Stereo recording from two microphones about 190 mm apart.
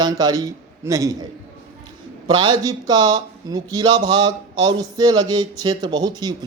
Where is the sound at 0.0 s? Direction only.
20° right (ahead or behind).